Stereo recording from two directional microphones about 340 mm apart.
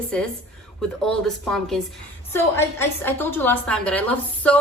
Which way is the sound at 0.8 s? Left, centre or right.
Centre.